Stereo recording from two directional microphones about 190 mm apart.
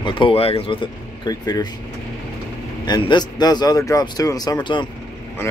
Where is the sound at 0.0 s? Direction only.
30° left (ahead or behind).